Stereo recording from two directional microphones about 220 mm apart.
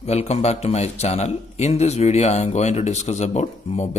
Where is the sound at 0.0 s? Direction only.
30° left (ahead or behind).